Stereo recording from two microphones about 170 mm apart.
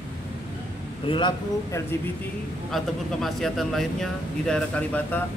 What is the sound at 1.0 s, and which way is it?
Speech, 30° left (ahead or behind).